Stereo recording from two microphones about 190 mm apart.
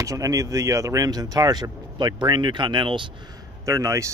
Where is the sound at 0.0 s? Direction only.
15° right (ahead or behind).